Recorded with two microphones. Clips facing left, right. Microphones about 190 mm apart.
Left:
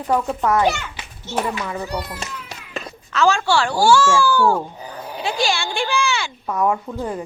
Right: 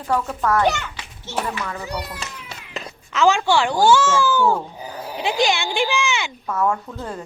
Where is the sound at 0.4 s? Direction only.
20° left (ahead or behind).